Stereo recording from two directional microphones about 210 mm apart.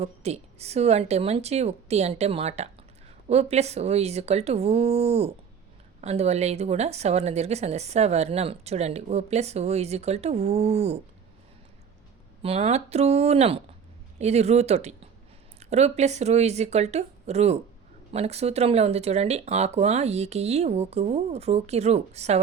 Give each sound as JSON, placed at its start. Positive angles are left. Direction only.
{"t": 0.0, "sound": "speech", "side_deg": -30}
{"t": 12.4, "sound": "speech", "side_deg": -30}